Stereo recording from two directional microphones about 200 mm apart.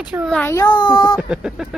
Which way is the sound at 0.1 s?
5° right (ahead or behind).